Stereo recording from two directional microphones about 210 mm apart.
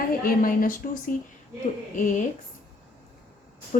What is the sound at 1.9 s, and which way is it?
Speech, 40° left (ahead or behind).